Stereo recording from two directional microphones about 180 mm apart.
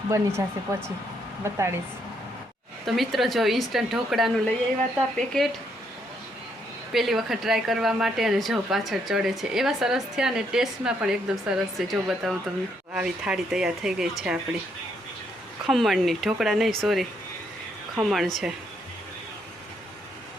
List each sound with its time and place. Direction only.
0.1 s speech: 15° right (ahead or behind)
2.8 s a woman's voice: centre (ahead or behind)
6.9 s a woman's voice: centre (ahead or behind)
15.6 s a woman's voice: centre (ahead or behind)